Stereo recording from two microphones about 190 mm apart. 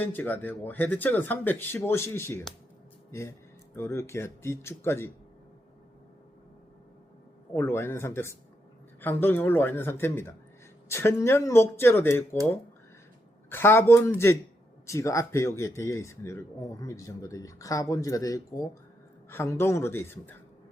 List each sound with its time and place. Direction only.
0.0 s speech: 10° left (ahead or behind)
3.8 s speech: 15° left (ahead or behind)
7.5 s speech: 15° left (ahead or behind)
13.5 s speech: 10° left (ahead or behind)